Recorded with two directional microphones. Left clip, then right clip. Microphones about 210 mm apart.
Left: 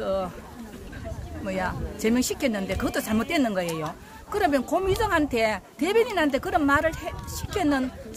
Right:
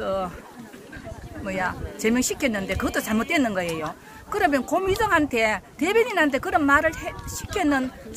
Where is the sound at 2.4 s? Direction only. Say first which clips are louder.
Right 2 dB; 5° left (ahead or behind).